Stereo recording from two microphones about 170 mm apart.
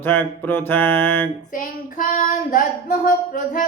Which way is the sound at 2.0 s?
50° left (ahead or behind).